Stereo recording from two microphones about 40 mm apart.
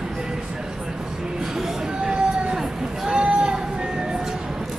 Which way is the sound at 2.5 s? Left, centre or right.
Centre.